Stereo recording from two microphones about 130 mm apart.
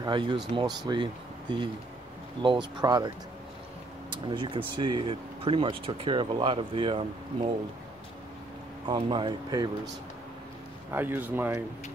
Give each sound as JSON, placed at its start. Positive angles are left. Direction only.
{"t": 0.0, "sound": "speech", "side_deg": -40}
{"t": 4.1, "sound": "speech", "side_deg": -35}
{"t": 8.8, "sound": "speech", "side_deg": -35}
{"t": 10.9, "sound": "speech", "side_deg": -15}